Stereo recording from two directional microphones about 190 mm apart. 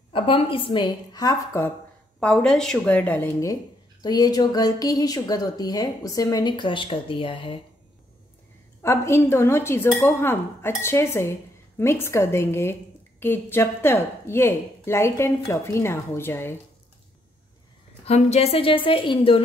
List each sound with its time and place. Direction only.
0.1 s a woman's voice: 30° left (ahead or behind)
2.1 s a woman's voice: 5° left (ahead or behind); by 7.6 s 25° left (ahead or behind)
8.8 s speech: 15° left (ahead or behind)
18.0 s a woman's voice: 35° left (ahead or behind)